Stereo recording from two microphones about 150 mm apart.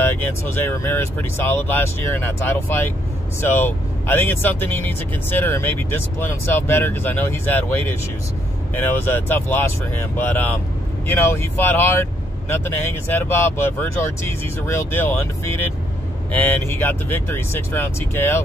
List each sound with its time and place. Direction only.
0.0 s speech: 15° left (ahead or behind)